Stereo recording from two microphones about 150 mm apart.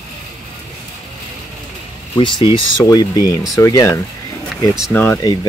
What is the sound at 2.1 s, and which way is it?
Speech, 35° left (ahead or behind).